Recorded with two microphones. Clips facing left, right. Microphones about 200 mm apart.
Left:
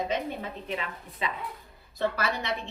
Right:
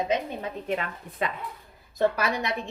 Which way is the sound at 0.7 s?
55° right (ahead or behind).